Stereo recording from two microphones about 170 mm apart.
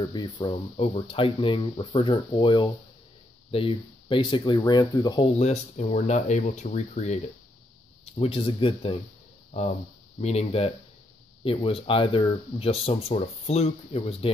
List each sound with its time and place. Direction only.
0.1 s speech: 25° left (ahead or behind)